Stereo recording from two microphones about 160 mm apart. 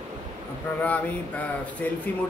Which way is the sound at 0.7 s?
10° left (ahead or behind).